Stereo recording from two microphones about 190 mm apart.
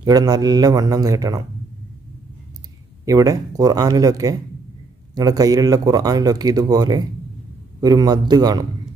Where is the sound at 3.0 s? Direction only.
20° right (ahead or behind).